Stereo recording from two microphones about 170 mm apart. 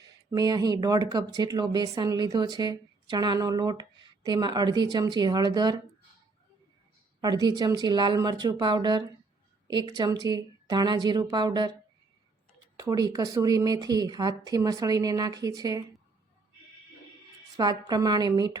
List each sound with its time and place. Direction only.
0.3 s speech: 20° right (ahead or behind)
7.2 s speech: 25° right (ahead or behind)
12.8 s speech: 20° right (ahead or behind)
17.6 s speech: 25° right (ahead or behind)